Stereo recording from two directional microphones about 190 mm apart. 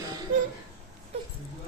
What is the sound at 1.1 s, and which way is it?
Dog, 35° right (ahead or behind).